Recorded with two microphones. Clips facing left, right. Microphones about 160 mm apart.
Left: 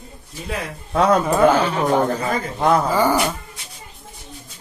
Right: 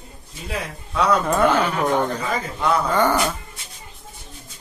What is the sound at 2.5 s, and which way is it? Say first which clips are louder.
Speech: left 4 dB; 45° left (ahead or behind).